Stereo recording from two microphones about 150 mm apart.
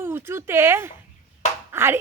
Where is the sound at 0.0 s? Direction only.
15° right (ahead or behind).